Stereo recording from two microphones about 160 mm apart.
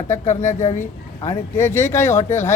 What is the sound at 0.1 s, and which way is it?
Speech, 50° left (ahead or behind).